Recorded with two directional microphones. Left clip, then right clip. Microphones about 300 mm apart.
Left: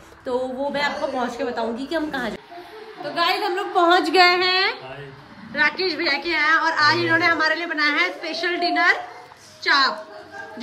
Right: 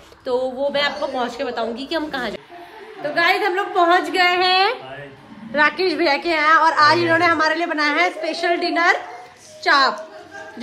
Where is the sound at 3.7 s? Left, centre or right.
Left.